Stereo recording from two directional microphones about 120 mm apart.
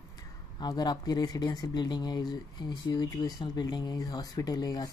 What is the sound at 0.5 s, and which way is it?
Speech, 35° left (ahead or behind).